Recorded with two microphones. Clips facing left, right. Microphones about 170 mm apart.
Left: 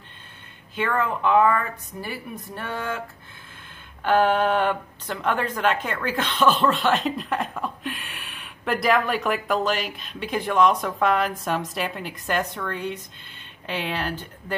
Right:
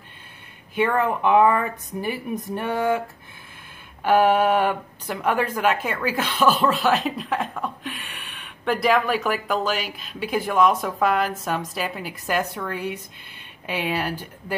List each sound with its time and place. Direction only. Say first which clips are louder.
0.7 s speech: right 4 dB; 15° right (ahead or behind)
4.0 s speech: right 2 dB; 10° right (ahead or behind)